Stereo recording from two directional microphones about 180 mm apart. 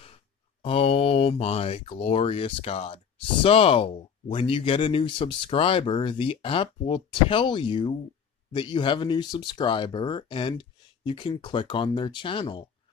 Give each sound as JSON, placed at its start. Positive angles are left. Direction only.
{"t": 0.6, "sound": "speech", "side_deg": 30}